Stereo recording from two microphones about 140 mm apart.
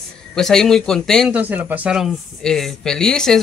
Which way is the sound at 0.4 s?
5° left (ahead or behind).